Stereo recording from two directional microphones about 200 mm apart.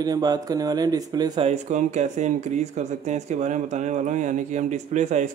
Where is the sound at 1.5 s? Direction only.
35° right (ahead or behind).